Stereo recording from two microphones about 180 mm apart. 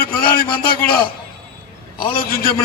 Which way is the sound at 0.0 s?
55° left (ahead or behind).